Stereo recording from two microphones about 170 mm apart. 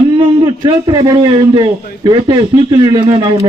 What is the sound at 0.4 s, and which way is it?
A man's voice, 25° right (ahead or behind).